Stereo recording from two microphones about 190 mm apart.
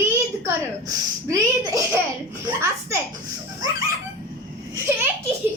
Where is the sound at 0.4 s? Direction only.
15° right (ahead or behind).